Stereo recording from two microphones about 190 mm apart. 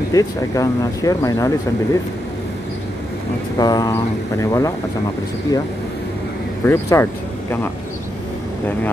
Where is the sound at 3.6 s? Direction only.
20° left (ahead or behind).